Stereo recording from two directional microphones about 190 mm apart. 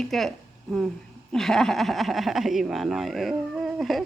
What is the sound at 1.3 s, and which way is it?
Speech, centre (ahead or behind).